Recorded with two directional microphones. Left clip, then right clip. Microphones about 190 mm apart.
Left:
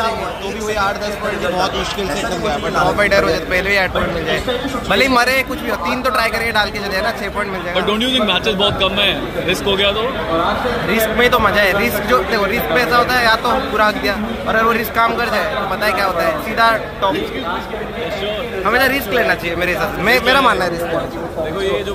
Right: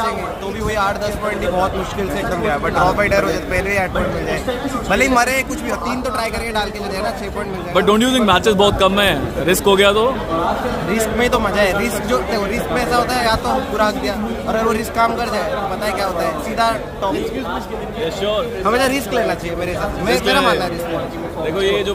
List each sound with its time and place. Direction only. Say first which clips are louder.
2.4 s a man's voice: right 1 dB; 5° right (ahead or behind)
7.7 s a man's voice: right 3 dB; 40° right (ahead or behind)
10.9 s a man's voice: left 3 dB; 10° right (ahead or behind)
18.7 s a man's voice: left 3 dB; 35° right (ahead or behind)
19.6 s a man's voice: left 4 dB; 5° left (ahead or behind)
21.5 s a man's voice: right 3 dB; 40° right (ahead or behind)